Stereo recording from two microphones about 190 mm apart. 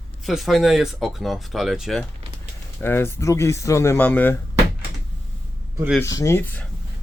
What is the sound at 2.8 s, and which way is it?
Speech, 10° left (ahead or behind).